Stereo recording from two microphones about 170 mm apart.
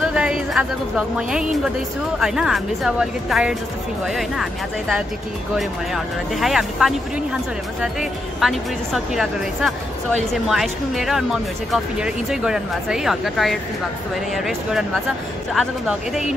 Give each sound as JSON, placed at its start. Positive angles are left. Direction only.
{"t": 0.0, "sound": "speech", "side_deg": -5}
{"t": 6.3, "sound": "speech", "side_deg": 0}